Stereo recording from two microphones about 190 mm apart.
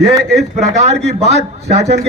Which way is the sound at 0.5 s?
35° right (ahead or behind).